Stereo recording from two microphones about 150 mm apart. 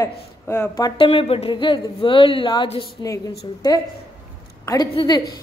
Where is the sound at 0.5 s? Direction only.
20° left (ahead or behind).